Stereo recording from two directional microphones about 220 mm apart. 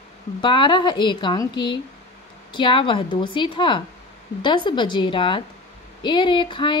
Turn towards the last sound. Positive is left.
turn(degrees=20)  # may be behind; listen again after turning